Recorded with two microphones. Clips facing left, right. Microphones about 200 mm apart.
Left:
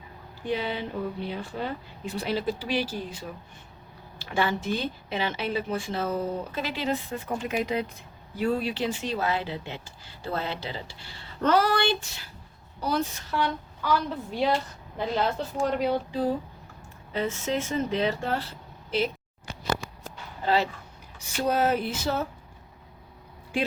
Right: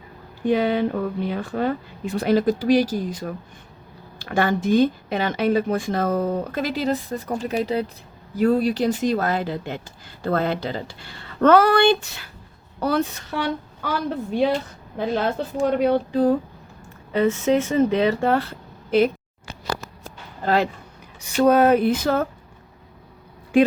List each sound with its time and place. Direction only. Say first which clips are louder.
0.4 s speech: right 10 dB; 50° right (ahead or behind)
15.1 s speech: right 4 dB; 55° right (ahead or behind)
20.4 s speech: right 4 dB; 50° right (ahead or behind)
21.2 s speech: right 9 dB; 65° right (ahead or behind)